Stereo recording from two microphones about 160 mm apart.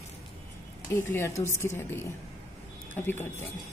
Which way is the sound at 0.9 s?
15° left (ahead or behind).